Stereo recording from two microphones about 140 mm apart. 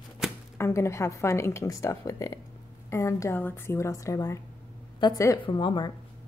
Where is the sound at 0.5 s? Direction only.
20° left (ahead or behind).